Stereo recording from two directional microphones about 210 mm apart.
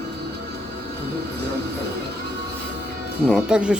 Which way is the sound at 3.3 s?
5° right (ahead or behind).